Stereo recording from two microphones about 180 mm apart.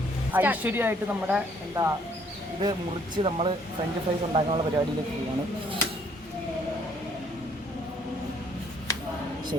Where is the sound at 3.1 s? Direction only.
30° right (ahead or behind).